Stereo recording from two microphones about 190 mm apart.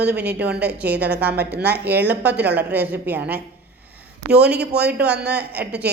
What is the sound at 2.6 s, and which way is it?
A woman's voice, 10° right (ahead or behind).